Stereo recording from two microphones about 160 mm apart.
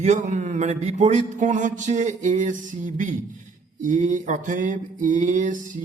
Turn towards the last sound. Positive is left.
turn(degrees=-50)  # may be behind; listen again after turning